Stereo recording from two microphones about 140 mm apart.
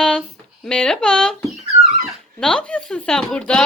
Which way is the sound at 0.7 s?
5° left (ahead or behind).